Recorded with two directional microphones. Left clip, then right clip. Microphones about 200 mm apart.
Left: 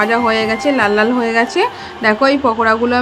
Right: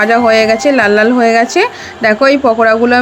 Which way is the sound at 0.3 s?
20° right (ahead or behind).